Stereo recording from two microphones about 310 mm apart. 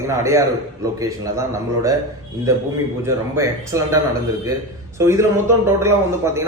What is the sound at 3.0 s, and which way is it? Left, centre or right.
A man's voice, centre.